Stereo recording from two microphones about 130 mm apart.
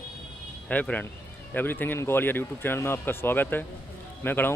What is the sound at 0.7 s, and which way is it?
Speech, 10° left (ahead or behind).